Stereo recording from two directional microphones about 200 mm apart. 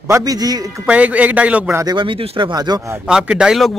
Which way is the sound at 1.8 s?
20° right (ahead or behind).